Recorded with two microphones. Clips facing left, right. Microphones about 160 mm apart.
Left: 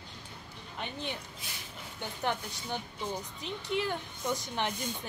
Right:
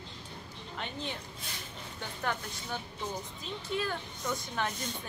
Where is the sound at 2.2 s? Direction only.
25° left (ahead or behind).